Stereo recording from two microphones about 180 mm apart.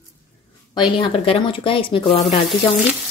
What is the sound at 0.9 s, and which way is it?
Speech, 30° left (ahead or behind).